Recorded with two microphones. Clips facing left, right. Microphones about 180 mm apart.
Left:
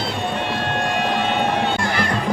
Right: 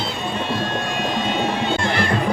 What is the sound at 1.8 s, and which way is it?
Music, 25° right (ahead or behind).